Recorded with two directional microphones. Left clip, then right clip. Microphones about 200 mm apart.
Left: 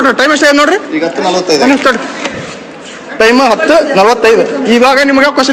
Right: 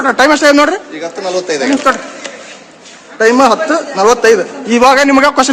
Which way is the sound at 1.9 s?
5° left (ahead or behind).